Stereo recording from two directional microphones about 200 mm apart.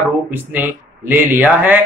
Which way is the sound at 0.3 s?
10° right (ahead or behind).